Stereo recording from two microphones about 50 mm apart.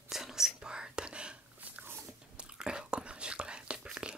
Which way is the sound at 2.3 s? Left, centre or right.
Centre.